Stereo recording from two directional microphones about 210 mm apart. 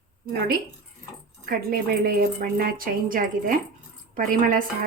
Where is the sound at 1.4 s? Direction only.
45° right (ahead or behind).